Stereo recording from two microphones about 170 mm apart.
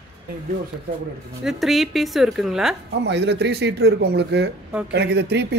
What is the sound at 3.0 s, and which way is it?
Speech, 90° right.